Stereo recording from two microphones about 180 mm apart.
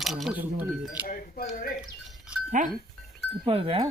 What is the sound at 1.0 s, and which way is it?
Speech, 50° left (ahead or behind).